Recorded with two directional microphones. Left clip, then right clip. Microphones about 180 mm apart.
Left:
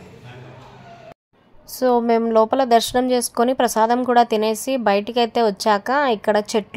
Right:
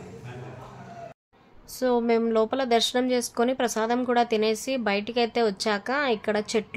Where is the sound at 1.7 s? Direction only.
25° left (ahead or behind).